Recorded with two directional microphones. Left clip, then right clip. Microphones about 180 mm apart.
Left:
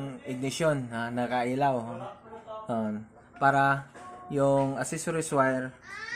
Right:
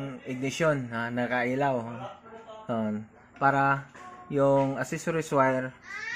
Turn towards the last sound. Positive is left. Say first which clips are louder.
# right 2 dB
turn(degrees=-30)  # may be behind; listen again after turning